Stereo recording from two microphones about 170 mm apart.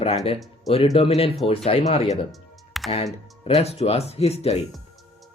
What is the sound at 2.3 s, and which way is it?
Music, centre (ahead or behind).